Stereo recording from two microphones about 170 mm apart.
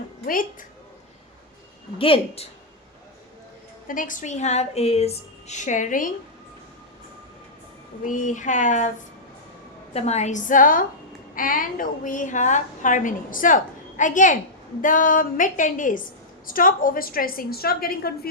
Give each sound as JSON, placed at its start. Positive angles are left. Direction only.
{"t": 2.0, "sound": "a woman's voice", "side_deg": 35}
{"t": 3.8, "sound": "a woman's voice", "side_deg": 50}
{"t": 8.0, "sound": "a woman's voice", "side_deg": 50}
{"t": 9.9, "sound": "a woman's voice", "side_deg": 40}